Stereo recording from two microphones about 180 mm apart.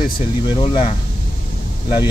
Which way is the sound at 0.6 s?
25° left (ahead or behind).